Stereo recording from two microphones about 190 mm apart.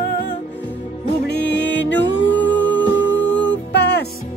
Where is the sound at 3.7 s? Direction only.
60° left (ahead or behind).